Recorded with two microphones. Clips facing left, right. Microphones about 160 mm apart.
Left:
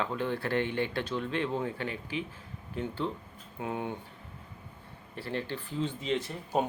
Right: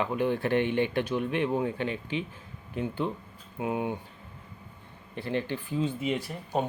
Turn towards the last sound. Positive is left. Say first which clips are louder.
# even
turn(degrees=5)  # may be behind; listen again after turning